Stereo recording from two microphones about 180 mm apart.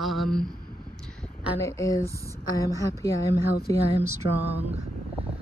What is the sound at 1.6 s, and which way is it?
A woman's voice, 15° left (ahead or behind).